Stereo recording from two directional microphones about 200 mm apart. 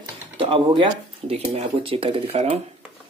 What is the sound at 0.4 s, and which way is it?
Speech, 25° right (ahead or behind).